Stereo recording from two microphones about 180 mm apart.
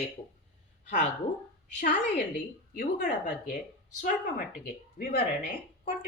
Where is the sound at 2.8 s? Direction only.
50° left (ahead or behind).